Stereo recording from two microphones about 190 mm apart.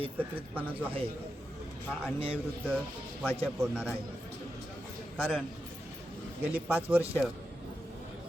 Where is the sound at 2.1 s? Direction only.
30° right (ahead or behind).